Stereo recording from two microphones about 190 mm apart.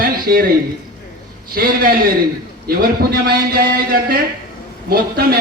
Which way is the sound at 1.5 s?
50° right (ahead or behind).